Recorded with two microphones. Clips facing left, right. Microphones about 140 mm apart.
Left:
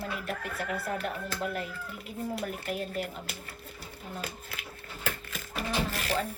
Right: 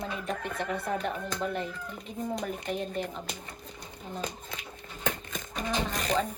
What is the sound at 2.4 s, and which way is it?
Speech, 5° left (ahead or behind).